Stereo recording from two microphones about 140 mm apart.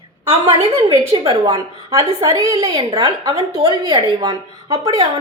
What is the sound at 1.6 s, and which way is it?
A woman's voice, 25° right (ahead or behind).